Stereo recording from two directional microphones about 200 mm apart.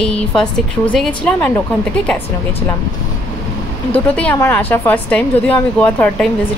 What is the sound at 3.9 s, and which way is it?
A woman's voice, 10° left (ahead or behind).